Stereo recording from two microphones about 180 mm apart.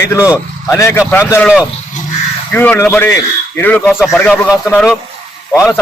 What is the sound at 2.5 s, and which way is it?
Speech, 10° left (ahead or behind).